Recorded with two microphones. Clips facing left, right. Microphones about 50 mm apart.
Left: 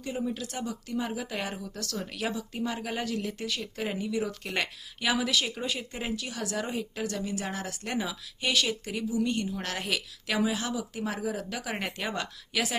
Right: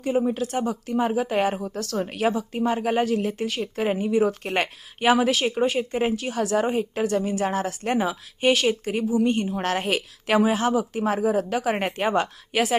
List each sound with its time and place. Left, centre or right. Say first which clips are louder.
0.0 s speech: right 10 dB; right